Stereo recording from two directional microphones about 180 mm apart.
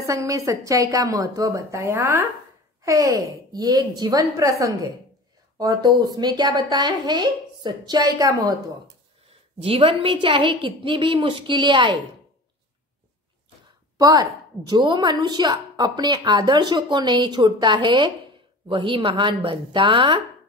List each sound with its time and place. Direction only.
0.0 s a woman's voice: 20° right (ahead or behind)
9.6 s a woman's voice: 35° right (ahead or behind)
13.9 s a woman's voice: 20° right (ahead or behind)